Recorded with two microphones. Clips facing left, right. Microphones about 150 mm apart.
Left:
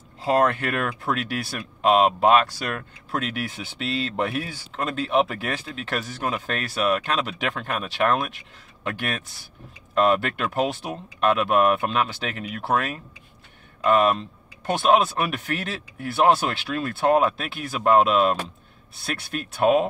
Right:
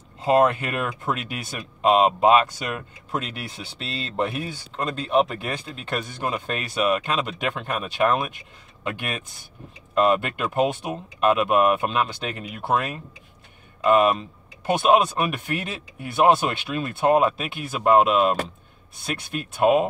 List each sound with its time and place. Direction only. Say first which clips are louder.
0.2 s speech: right 2 dB; centre (ahead or behind)
9.9 s speech: even; centre (ahead or behind)
13.8 s speech: right 1 dB; 5° right (ahead or behind)
19.3 s speech: right 1 dB; centre (ahead or behind)